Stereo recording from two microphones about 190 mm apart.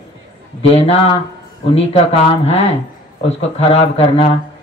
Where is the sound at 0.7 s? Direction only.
30° left (ahead or behind).